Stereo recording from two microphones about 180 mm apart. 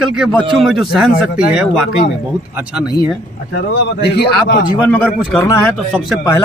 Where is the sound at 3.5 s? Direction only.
65° left (ahead or behind).